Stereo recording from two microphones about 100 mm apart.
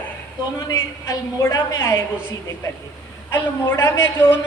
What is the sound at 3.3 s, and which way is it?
A woman's voice, 25° left (ahead or behind).